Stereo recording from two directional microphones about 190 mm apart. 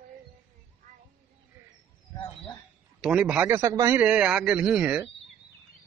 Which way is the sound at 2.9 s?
5° right (ahead or behind).